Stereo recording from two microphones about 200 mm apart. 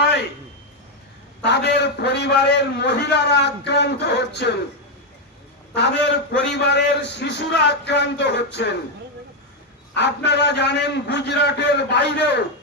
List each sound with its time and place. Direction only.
1.4 s a man's voice: 55° left (ahead or behind)
5.7 s a man's voice: 60° left (ahead or behind)
9.9 s a man's voice: 60° left (ahead or behind)